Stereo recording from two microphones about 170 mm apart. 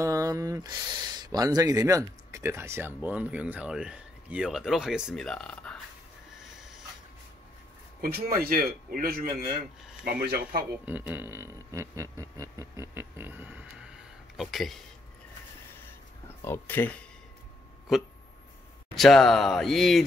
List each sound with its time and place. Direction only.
0.0 s speech: 20° right (ahead or behind); by 5.8 s 5° left (ahead or behind)
8.0 s speech: 60° right (ahead or behind)
10.9 s speech: 10° right (ahead or behind)
16.3 s speech: 15° left (ahead or behind)
18.9 s speech: centre (ahead or behind)